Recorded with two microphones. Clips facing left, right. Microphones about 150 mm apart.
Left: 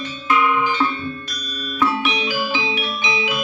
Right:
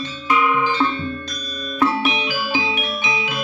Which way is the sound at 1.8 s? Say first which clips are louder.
Right 1 dB; 30° right (ahead or behind).